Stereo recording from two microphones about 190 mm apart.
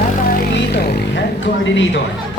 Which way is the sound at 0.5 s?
60° left (ahead or behind).